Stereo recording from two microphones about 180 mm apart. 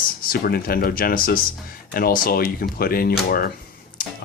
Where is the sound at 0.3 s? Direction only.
55° left (ahead or behind).